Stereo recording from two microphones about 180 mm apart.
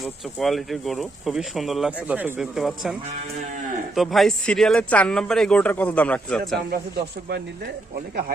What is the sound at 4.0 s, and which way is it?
Speech, centre (ahead or behind).